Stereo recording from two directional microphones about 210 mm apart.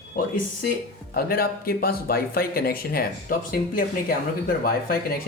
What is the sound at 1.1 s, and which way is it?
Speech, 45° left (ahead or behind).